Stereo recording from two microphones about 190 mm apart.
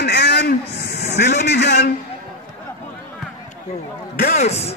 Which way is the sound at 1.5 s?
60° left (ahead or behind).